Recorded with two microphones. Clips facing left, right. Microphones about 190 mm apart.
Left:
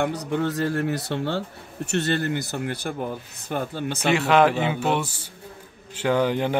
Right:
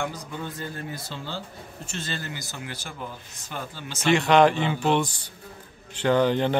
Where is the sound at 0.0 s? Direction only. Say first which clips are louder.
Left 8 dB; 70° left (ahead or behind).